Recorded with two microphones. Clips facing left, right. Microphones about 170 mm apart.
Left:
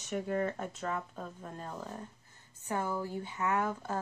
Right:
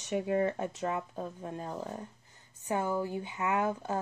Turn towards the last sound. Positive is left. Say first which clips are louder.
# right 2 dB
turn(degrees=-15)  # may be behind; listen again after turning